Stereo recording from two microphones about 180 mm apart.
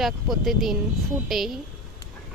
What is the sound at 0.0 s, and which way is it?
Speech, centre (ahead or behind).